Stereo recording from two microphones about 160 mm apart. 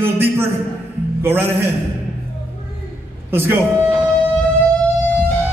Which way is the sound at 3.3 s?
15° right (ahead or behind).